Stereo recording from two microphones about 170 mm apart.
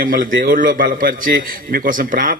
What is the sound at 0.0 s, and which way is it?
A man's voice, 55° right (ahead or behind).